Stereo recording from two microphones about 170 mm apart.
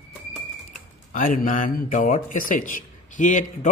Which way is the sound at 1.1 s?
50° left (ahead or behind).